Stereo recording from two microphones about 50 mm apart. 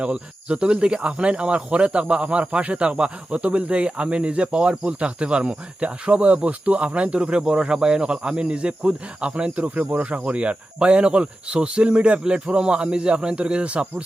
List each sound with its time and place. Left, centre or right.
0.0 s speech: right